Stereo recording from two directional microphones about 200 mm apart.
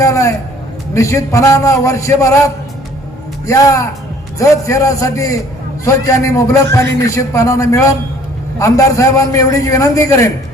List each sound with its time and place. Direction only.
0.0 s a man's voice: 15° left (ahead or behind)
3.4 s a man's voice: 15° left (ahead or behind)